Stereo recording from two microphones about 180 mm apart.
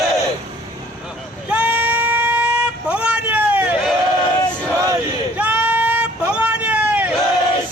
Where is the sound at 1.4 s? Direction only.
5° right (ahead or behind).